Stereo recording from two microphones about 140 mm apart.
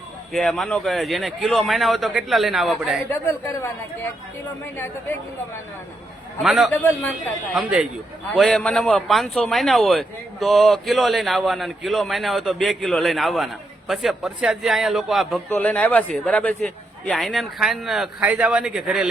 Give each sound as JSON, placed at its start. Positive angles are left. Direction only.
{"t": 0.3, "sound": "a man's voice", "side_deg": 0}
{"t": 3.1, "sound": "a man's voice", "side_deg": 15}
{"t": 6.4, "sound": "a man's voice", "side_deg": -5}
{"t": 15.4, "sound": "a man's voice", "side_deg": 10}